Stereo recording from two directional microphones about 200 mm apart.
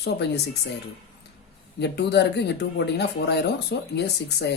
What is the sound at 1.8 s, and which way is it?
Speech, 55° left (ahead or behind).